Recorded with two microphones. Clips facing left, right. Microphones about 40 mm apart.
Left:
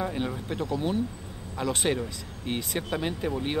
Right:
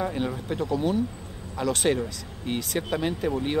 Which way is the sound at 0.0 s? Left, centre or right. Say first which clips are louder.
Right 2 dB; centre.